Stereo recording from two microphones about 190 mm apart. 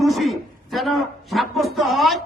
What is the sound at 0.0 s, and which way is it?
A man's voice, centre (ahead or behind).